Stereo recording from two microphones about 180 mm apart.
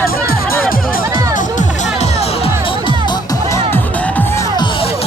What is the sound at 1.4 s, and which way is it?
Music, 45° left (ahead or behind).